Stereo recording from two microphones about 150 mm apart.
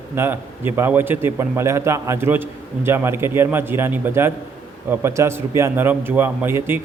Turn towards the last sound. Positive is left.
turn(degrees=-15)  # may be behind; listen again after turning